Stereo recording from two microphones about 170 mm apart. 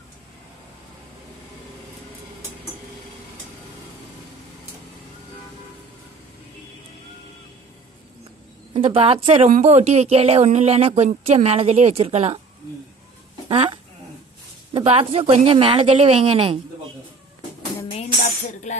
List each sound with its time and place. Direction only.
8.7 s speech: 35° right (ahead or behind)
13.5 s speech: 35° right (ahead or behind)
18.5 s music: 45° left (ahead or behind)